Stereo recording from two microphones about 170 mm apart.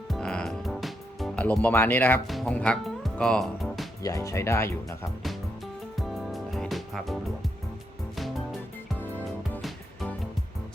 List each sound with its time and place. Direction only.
0.1 s music: 5° left (ahead or behind)
1.6 s speech: 15° left (ahead or behind)
2.2 s speech: centre (ahead or behind)
4.0 s speech: 20° left (ahead or behind)
6.0 s music: centre (ahead or behind)
9.6 s music: centre (ahead or behind)